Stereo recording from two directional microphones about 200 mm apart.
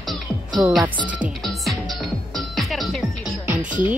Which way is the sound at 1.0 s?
5° right (ahead or behind).